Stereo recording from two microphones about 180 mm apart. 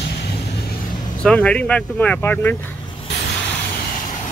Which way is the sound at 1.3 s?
5° left (ahead or behind).